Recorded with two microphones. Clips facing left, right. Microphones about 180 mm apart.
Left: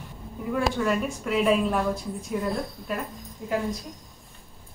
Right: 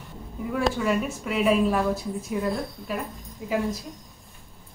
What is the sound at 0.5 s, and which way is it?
Speech, centre (ahead or behind).